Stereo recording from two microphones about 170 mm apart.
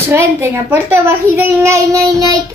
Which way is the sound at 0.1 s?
15° right (ahead or behind).